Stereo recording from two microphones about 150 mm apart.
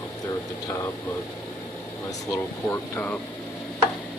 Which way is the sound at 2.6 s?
15° left (ahead or behind).